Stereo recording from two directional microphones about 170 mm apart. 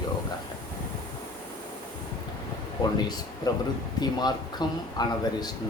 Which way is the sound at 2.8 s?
20° left (ahead or behind).